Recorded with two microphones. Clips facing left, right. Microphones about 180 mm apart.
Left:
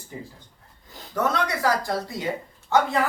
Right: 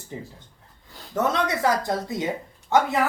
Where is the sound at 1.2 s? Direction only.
25° right (ahead or behind).